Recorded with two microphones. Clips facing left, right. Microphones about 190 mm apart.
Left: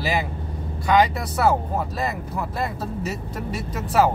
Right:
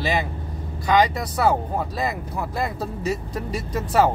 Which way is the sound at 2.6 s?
5° left (ahead or behind).